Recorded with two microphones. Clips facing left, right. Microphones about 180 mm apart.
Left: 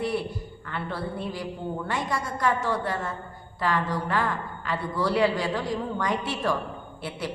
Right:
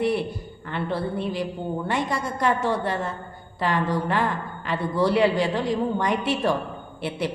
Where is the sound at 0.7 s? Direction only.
20° right (ahead or behind).